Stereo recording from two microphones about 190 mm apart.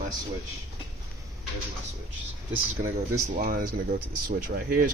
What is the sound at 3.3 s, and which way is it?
Speech, 45° right (ahead or behind).